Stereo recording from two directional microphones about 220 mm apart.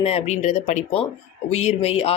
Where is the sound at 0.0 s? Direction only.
30° left (ahead or behind).